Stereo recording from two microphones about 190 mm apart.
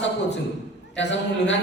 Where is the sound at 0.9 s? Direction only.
70° left (ahead or behind).